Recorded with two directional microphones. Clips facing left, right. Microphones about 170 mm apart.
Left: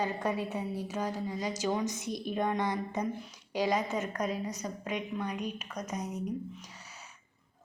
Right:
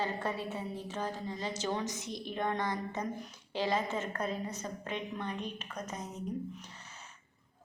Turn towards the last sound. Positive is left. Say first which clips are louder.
# left 1 dB
turn(degrees=10)  # may be behind; listen again after turning